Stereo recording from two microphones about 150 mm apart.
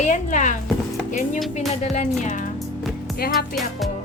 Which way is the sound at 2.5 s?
Centre (ahead or behind).